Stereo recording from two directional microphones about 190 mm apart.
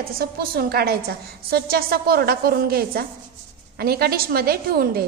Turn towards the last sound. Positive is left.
turn(degrees=-55)  # may be behind; listen again after turning